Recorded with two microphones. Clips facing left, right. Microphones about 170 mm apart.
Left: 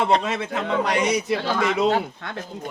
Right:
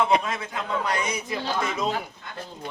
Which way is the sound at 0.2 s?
80° left.